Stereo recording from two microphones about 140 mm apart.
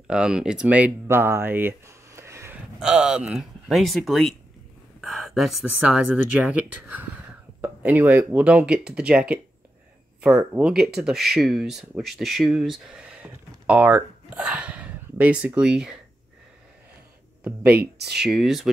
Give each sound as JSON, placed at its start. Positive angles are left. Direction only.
{"t": 0.1, "sound": "speech", "side_deg": -5}
{"t": 2.8, "sound": "speech", "side_deg": -5}
{"t": 17.4, "sound": "speech", "side_deg": -10}